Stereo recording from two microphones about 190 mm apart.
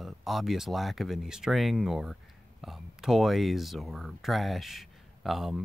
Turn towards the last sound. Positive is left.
turn(degrees=0)  # may be behind; listen again after turning